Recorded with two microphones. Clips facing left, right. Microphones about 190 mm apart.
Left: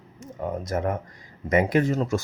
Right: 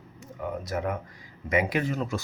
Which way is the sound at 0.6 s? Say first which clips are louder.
Left 4 dB; 45° left (ahead or behind).